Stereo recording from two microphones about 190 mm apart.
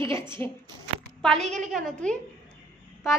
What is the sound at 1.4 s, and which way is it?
Speech, 40° right (ahead or behind).